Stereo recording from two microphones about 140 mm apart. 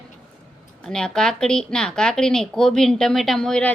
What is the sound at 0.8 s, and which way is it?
A woman's voice, 5° left (ahead or behind).